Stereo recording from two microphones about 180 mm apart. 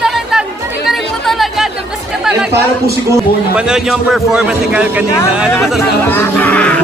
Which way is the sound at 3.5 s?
5° right (ahead or behind).